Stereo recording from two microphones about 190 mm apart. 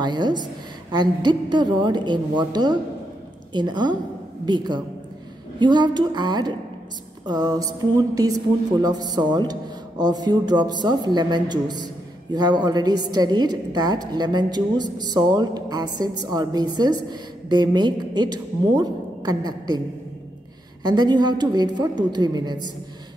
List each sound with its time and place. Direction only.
0.0 s a woman's voice: 25° right (ahead or behind)
20.8 s speech: 20° right (ahead or behind)